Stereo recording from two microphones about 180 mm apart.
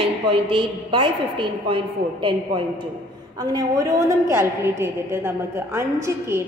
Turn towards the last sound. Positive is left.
turn(degrees=-15)  # may be behind; listen again after turning